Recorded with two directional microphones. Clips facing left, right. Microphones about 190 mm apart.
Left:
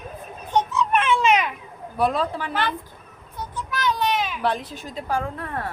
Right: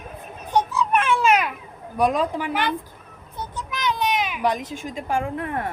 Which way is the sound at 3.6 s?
15° right (ahead or behind).